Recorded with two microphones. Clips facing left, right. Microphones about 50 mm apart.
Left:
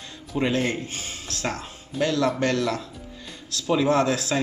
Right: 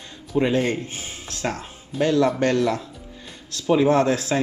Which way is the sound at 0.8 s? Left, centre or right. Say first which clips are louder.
Even; right.